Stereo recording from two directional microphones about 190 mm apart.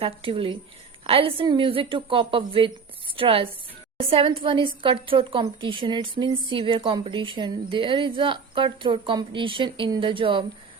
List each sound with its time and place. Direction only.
0.0 s a woman's voice: 30° right (ahead or behind)